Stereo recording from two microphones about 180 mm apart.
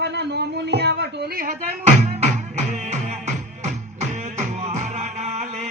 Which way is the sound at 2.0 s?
40° right (ahead or behind).